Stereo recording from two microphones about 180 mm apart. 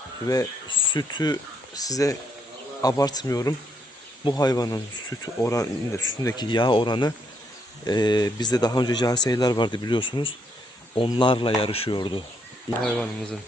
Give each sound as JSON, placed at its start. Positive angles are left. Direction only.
{"t": 0.3, "sound": "speech", "side_deg": 25}
{"t": 12.8, "sound": "speech", "side_deg": 5}